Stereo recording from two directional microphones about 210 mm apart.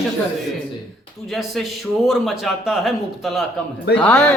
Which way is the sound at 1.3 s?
Centre (ahead or behind).